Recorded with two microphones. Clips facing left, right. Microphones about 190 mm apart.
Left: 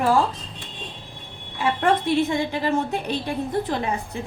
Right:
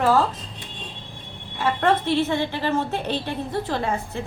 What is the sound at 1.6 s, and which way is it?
A woman's voice, 15° left (ahead or behind).